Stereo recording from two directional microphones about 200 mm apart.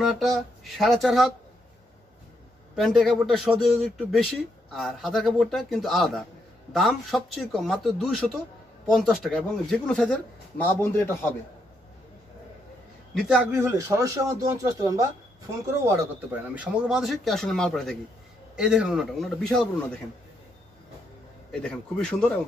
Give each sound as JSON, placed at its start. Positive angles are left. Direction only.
{"t": 0.0, "sound": "a man's voice", "side_deg": 0}
{"t": 2.7, "sound": "a man's voice", "side_deg": 0}
{"t": 13.1, "sound": "a man's voice", "side_deg": 0}
{"t": 13.5, "sound": "speech", "side_deg": -10}
{"t": 16.5, "sound": "a man's voice", "side_deg": -5}
{"t": 21.5, "sound": "a man's voice", "side_deg": 5}